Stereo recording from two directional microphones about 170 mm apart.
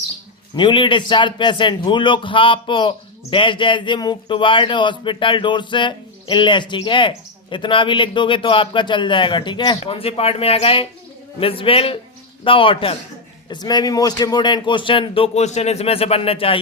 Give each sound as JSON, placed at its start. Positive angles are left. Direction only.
{"t": 0.5, "sound": "a man's voice", "side_deg": 30}